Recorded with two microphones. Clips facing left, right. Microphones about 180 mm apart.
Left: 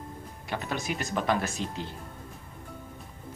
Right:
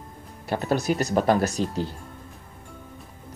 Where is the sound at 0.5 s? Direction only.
40° right (ahead or behind).